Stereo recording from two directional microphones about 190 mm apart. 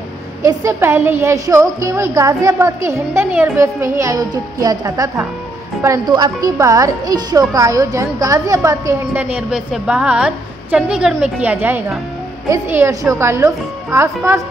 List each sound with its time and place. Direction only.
0.5 s a woman's voice: 15° right (ahead or behind)